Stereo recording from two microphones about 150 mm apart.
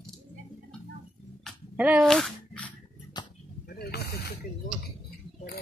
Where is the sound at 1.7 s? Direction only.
10° right (ahead or behind).